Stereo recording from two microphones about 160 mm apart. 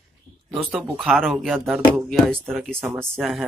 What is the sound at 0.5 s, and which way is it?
Speech, 5° right (ahead or behind).